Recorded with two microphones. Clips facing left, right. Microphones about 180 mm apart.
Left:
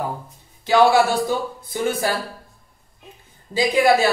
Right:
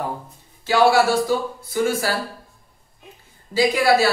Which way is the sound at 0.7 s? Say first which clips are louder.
Left 1 dB; 20° left (ahead or behind).